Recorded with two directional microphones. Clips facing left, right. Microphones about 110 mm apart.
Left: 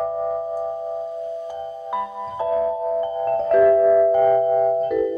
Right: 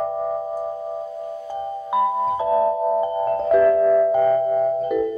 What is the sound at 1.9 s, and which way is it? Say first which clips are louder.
Music: right 9 dB; 5° right (ahead or behind).